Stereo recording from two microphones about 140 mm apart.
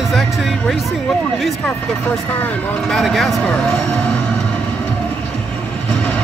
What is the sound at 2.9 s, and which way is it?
Speech, centre (ahead or behind).